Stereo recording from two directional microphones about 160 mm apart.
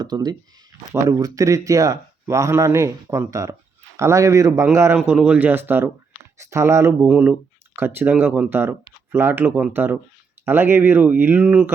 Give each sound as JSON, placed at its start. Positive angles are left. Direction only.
{"t": 0.0, "sound": "speech", "side_deg": -25}
{"t": 7.0, "sound": "speech", "side_deg": -10}